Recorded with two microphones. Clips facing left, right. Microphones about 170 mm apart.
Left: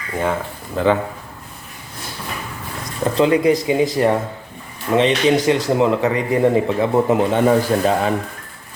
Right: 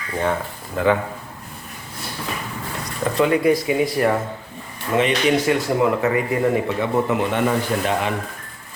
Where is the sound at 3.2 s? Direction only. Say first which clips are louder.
Left 2 dB; 25° left (ahead or behind).